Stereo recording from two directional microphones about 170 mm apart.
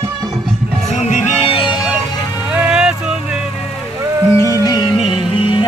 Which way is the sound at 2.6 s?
5° right (ahead or behind).